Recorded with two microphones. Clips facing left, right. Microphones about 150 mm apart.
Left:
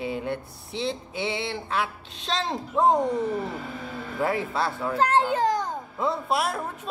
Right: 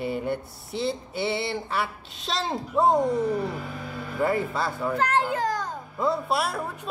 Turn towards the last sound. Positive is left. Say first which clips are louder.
# even
turn(degrees=0)  # may be behind; listen again after turning